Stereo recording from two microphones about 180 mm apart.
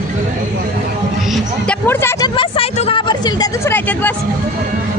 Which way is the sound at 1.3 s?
10° left (ahead or behind).